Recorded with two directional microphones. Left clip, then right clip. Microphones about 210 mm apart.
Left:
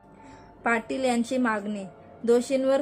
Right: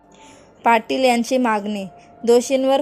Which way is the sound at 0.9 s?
20° right (ahead or behind).